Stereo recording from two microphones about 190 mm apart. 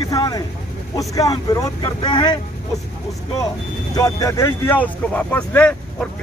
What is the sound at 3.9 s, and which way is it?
Speech, 15° left (ahead or behind).